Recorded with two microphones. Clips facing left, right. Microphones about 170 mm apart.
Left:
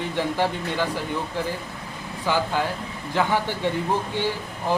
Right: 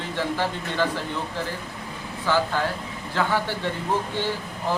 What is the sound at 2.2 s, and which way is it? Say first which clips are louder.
Speech: even; 15° left (ahead or behind).